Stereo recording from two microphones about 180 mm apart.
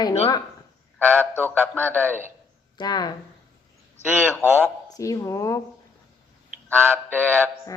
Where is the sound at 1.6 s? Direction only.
10° left (ahead or behind).